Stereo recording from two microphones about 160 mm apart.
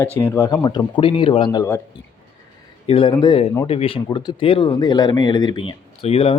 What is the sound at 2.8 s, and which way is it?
Speech, 35° left (ahead or behind).